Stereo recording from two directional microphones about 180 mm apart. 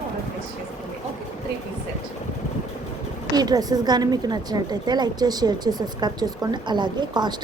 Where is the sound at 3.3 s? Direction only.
20° right (ahead or behind).